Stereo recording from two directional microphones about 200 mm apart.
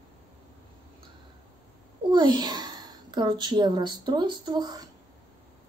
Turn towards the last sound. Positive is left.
turn(degrees=-20)  # may be behind; listen again after turning